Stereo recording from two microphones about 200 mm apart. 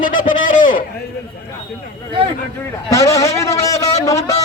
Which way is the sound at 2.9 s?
15° left (ahead or behind).